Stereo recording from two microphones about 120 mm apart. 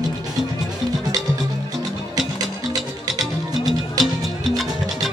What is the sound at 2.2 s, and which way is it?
Music, 30° right (ahead or behind).